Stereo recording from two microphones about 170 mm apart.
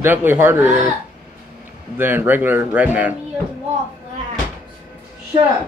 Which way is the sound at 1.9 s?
10° right (ahead or behind).